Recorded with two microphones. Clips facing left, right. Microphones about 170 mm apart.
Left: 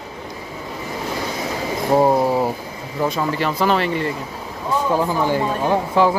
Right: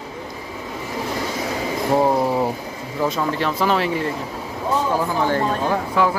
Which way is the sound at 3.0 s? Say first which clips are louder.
Left 1 dB; 10° left (ahead or behind).